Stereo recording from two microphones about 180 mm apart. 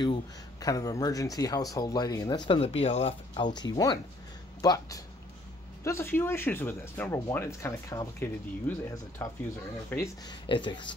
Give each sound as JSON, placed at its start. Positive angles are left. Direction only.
{"t": 0.0, "sound": "speech", "side_deg": 25}
{"t": 10.2, "sound": "speech", "side_deg": 25}